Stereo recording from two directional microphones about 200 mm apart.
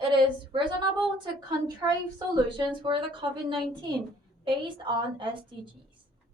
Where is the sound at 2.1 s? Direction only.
20° right (ahead or behind).